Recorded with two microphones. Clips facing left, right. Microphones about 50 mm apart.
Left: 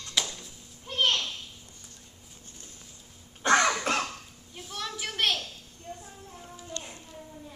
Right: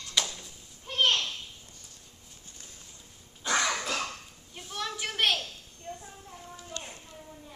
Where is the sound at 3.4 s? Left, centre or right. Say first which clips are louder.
Left 6 dB; left.